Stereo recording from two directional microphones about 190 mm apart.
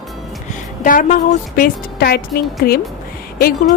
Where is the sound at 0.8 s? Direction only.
45° left (ahead or behind).